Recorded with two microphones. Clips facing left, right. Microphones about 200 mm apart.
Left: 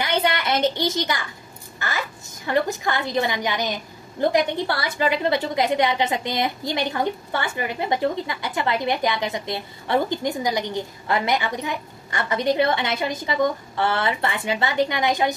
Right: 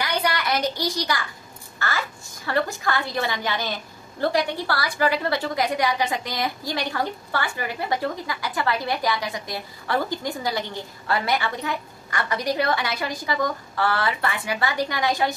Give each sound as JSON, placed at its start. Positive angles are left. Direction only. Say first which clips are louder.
{"t": 0.0, "sound": "a woman's voice", "louder": "left 2 dB", "side_deg": 25}